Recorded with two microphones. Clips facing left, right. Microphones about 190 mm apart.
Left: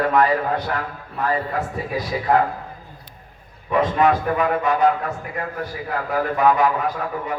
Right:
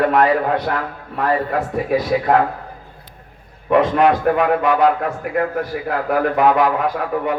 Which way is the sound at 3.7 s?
70° right (ahead or behind).